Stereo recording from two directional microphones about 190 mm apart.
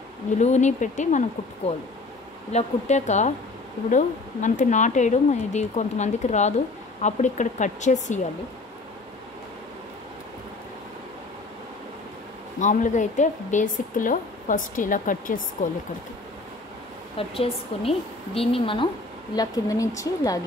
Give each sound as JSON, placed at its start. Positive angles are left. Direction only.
{"t": 0.4, "sound": "speech", "side_deg": 40}
{"t": 2.5, "sound": "speech", "side_deg": 40}
{"t": 12.5, "sound": "speech", "side_deg": 40}
{"t": 17.3, "sound": "a woman's voice", "side_deg": 30}